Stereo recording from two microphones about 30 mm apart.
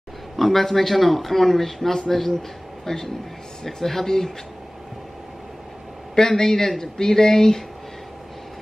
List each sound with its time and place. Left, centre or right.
0.4 s a man's voice: centre
6.1 s speech: centre